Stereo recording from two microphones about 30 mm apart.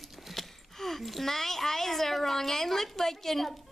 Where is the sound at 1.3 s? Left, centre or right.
Centre.